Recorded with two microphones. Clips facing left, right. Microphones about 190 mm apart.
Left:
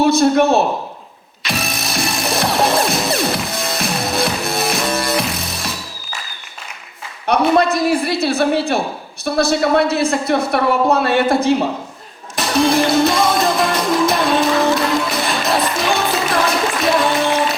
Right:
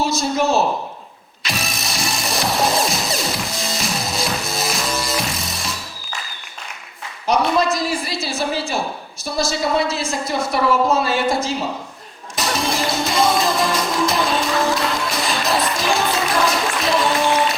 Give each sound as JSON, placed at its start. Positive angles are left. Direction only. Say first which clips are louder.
{"t": 0.0, "sound": "a man's voice", "louder": "left 7 dB", "side_deg": 60}
{"t": 1.4, "sound": "music", "louder": "left 4 dB", "side_deg": 0}
{"t": 4.1, "sound": "music", "louder": "left 5 dB", "side_deg": 60}
{"t": 4.7, "sound": "music", "louder": "left 4 dB", "side_deg": 0}
{"t": 7.3, "sound": "a man's voice", "louder": "left 3 dB", "side_deg": 60}
{"t": 12.4, "sound": "music", "louder": "left 7 dB", "side_deg": 0}